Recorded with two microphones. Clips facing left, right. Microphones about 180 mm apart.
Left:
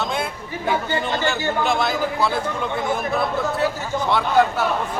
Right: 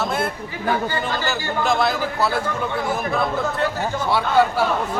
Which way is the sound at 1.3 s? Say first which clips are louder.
Right 1 dB; centre (ahead or behind).